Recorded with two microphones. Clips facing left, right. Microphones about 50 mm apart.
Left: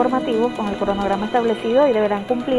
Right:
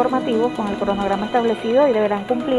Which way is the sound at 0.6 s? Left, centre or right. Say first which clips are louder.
Even; left.